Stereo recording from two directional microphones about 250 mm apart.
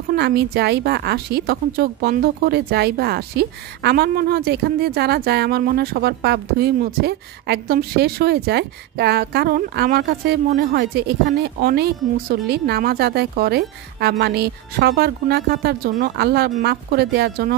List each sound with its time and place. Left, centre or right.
0.1 s a woman's voice: right